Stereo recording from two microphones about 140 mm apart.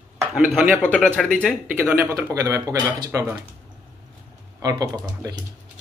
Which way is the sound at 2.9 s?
30° right (ahead or behind).